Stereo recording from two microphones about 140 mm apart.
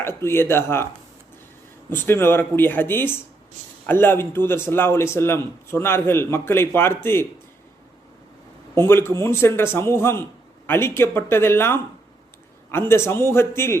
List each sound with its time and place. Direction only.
0.0 s speech: 20° left (ahead or behind)
1.9 s speech: 15° left (ahead or behind)
8.9 s speech: 15° left (ahead or behind)
12.9 s speech: 15° left (ahead or behind)